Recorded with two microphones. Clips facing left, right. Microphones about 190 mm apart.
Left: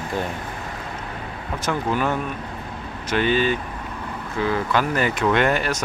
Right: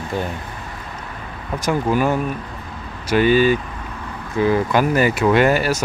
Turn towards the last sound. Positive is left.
turn(degrees=-5)  # may be behind; listen again after turning